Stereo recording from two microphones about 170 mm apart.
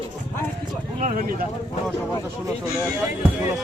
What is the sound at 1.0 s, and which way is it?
Speech, 50° right (ahead or behind).